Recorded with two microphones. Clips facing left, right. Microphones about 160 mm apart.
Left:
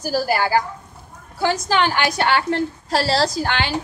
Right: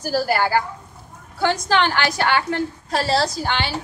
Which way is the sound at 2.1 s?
30° left (ahead or behind).